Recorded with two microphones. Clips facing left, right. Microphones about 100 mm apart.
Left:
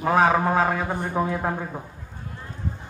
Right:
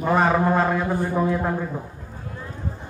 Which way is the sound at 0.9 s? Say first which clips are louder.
Right 3 dB; 15° left (ahead or behind).